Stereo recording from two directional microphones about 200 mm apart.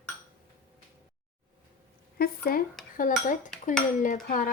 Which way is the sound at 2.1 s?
50° left (ahead or behind).